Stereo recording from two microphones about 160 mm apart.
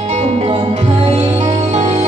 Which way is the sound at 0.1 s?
40° right (ahead or behind).